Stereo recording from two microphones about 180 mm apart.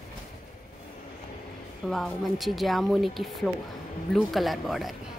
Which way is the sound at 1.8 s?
Centre (ahead or behind).